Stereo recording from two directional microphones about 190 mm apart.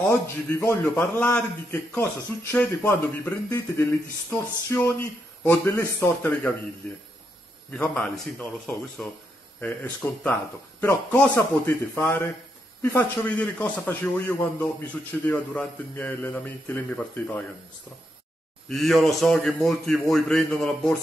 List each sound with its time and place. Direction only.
0.6 s a man's voice: 10° left (ahead or behind)
7.7 s a man's voice: 5° left (ahead or behind)
18.7 s speech: centre (ahead or behind)